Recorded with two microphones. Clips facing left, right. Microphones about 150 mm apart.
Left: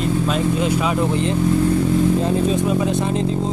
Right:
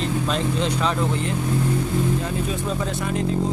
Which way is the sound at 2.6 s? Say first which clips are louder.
Left 7 dB; 15° left (ahead or behind).